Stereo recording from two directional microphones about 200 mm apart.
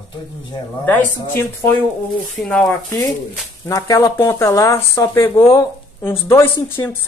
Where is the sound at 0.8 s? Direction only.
10° left (ahead or behind).